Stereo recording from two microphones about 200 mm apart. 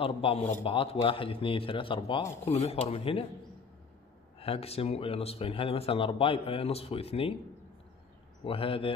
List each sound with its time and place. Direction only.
0.0 s a man's voice: 30° left (ahead or behind)
4.4 s a man's voice: 30° left (ahead or behind)
8.5 s a man's voice: 25° left (ahead or behind)